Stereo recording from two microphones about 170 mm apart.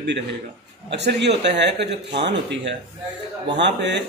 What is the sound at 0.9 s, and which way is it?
A man's voice, 90° right.